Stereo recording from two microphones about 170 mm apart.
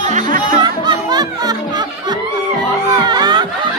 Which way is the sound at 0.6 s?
25° right (ahead or behind).